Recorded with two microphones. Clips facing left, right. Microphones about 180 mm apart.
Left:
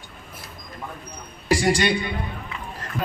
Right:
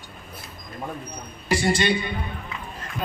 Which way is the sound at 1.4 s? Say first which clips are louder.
Left 2 dB; 90° left.